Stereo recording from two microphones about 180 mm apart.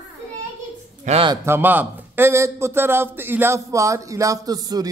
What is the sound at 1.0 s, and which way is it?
Speech, 35° right (ahead or behind).